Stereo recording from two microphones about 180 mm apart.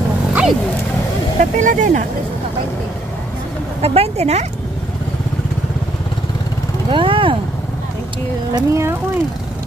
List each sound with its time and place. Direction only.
0.3 s wild animals: 5° right (ahead or behind)
1.4 s speech: 45° right (ahead or behind)
3.8 s speech: 35° right (ahead or behind)
6.9 s speech: 30° right (ahead or behind)
8.5 s speech: 15° right (ahead or behind)